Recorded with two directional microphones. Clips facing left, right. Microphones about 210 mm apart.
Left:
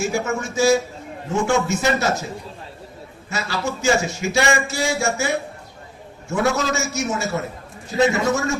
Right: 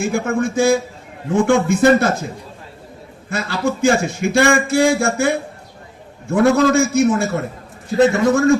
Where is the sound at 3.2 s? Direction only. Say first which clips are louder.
Right 5 dB; 55° right (ahead or behind).